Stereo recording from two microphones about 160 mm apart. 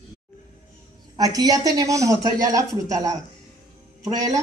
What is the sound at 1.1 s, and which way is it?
Speech, 25° right (ahead or behind).